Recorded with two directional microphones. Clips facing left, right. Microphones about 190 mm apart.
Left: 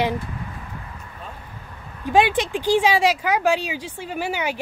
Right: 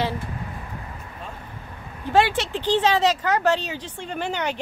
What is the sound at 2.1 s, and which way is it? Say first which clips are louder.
Speech: left 2 dB; 15° left (ahead or behind).